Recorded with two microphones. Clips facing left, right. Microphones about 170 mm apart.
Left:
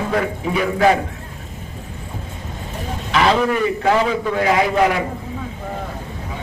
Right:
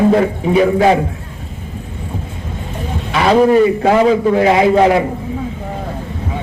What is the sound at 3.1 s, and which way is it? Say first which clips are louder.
A man's voice: right 7 dB; 30° right (ahead or behind).